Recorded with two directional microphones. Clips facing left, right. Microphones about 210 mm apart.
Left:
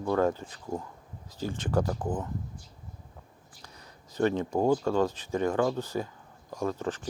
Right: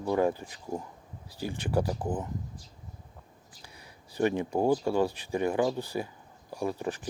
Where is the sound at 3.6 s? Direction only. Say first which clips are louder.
Left 1 dB; 10° right (ahead or behind).